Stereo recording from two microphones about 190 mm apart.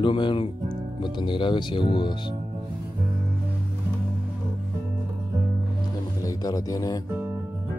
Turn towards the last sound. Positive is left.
turn(degrees=20)  # may be behind; listen again after turning